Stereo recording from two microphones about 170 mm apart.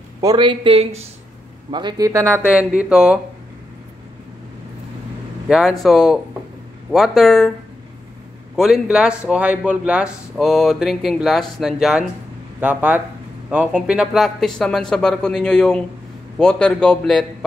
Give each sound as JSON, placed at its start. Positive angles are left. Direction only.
{"t": 0.2, "sound": "speech", "side_deg": -25}
{"t": 2.8, "sound": "speech", "side_deg": -5}
{"t": 5.5, "sound": "speech", "side_deg": 0}
{"t": 8.5, "sound": "speech", "side_deg": 0}